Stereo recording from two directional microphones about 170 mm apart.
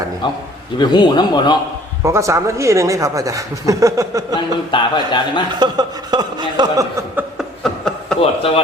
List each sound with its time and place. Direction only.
0.8 s a man's voice: 25° left (ahead or behind)
2.0 s speech: 15° right (ahead or behind)
4.4 s a man's voice: 25° left (ahead or behind)
5.5 s speech: 25° right (ahead or behind)
7.2 s chuckle: centre (ahead or behind)
8.2 s a man's voice: 35° left (ahead or behind)